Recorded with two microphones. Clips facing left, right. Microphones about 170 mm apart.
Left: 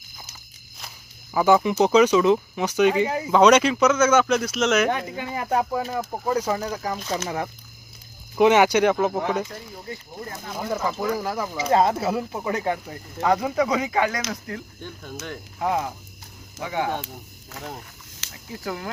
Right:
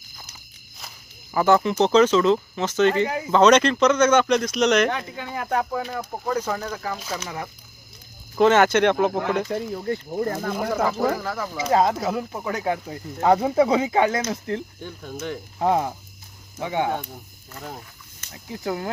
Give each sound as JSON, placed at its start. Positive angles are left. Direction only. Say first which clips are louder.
{"t": 0.8, "sound": "speech", "louder": "even", "side_deg": 0}
{"t": 8.4, "sound": "speech", "louder": "even", "side_deg": 10}
{"t": 9.5, "sound": "speech", "louder": "right 11 dB", "side_deg": -55}
{"t": 11.2, "sound": "speech", "louder": "left 2 dB", "side_deg": 15}
{"t": 11.6, "sound": "speech", "louder": "even", "side_deg": 0}
{"t": 13.2, "sound": "speech", "louder": "right 3 dB", "side_deg": -30}
{"t": 14.8, "sound": "speech", "louder": "right 3 dB", "side_deg": -15}
{"t": 15.6, "sound": "speech", "louder": "right 3 dB", "side_deg": -30}
{"t": 18.5, "sound": "speech", "louder": "right 4 dB", "side_deg": -20}